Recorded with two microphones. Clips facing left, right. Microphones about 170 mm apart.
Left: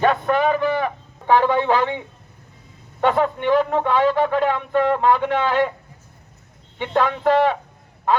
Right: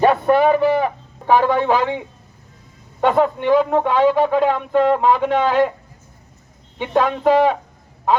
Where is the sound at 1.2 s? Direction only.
10° right (ahead or behind).